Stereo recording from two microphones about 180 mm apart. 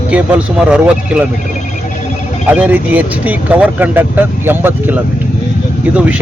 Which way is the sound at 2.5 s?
10° right (ahead or behind).